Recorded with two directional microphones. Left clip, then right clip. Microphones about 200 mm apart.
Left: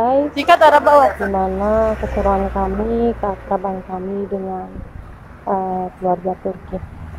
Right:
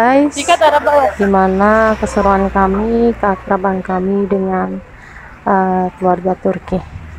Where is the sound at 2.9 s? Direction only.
30° right (ahead or behind).